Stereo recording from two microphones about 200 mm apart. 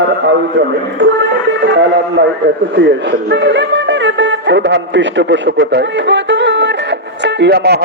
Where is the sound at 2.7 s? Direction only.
60° right (ahead or behind).